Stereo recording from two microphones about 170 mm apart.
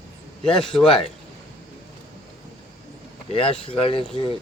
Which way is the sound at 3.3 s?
35° left (ahead or behind).